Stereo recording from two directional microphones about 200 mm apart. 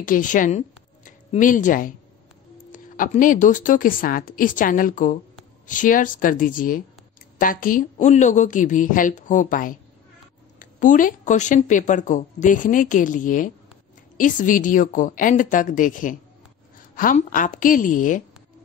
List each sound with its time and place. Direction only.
0.0 s a woman's voice: 40° left (ahead or behind)